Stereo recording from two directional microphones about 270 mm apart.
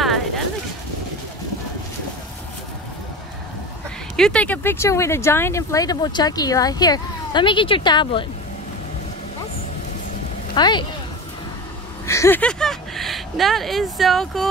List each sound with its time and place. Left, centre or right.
4.2 s speech: centre
10.5 s speech: centre
12.1 s speech: centre